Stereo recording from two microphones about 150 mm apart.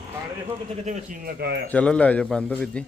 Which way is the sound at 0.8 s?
60° right (ahead or behind).